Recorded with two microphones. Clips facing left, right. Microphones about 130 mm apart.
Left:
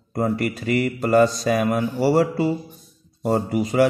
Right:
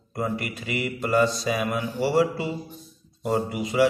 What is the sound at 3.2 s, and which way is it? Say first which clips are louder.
Mantra: left 4 dB; 40° left (ahead or behind).